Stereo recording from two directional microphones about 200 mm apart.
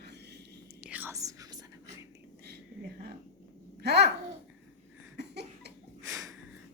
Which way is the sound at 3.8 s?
55° right (ahead or behind).